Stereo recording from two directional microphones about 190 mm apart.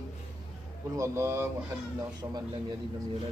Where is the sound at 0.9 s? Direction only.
15° right (ahead or behind).